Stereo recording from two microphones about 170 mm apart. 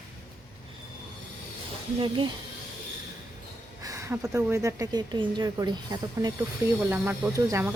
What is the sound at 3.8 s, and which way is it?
Speech, 15° right (ahead or behind).